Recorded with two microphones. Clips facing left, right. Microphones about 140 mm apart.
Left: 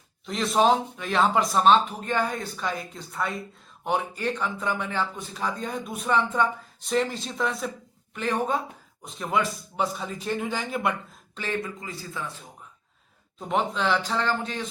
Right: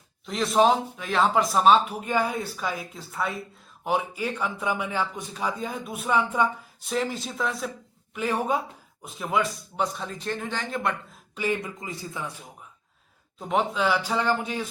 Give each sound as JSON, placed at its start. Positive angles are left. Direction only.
{"t": 0.3, "sound": "speech", "side_deg": 0}
{"t": 11.3, "sound": "a man's voice", "side_deg": -10}
{"t": 13.4, "sound": "speech", "side_deg": 0}